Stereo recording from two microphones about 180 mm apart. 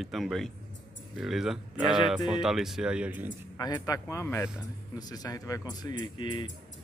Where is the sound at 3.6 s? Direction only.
20° left (ahead or behind).